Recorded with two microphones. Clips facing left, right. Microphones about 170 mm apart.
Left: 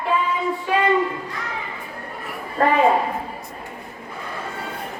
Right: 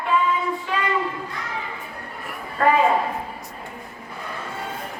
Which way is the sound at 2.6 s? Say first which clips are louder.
Even; 35° left (ahead or behind).